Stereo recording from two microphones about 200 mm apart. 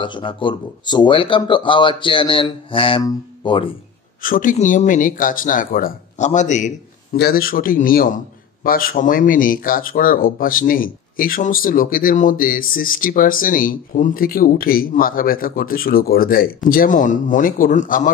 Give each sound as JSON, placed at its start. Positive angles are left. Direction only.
{"t": 0.0, "sound": "speech", "side_deg": 25}
{"t": 4.2, "sound": "speech", "side_deg": 40}
{"t": 7.2, "sound": "speech", "side_deg": 50}